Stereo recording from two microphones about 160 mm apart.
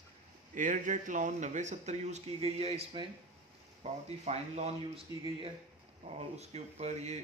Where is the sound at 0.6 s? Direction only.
55° right (ahead or behind).